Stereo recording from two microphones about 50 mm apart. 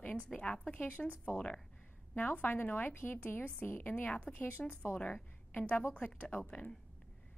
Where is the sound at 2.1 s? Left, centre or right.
Left.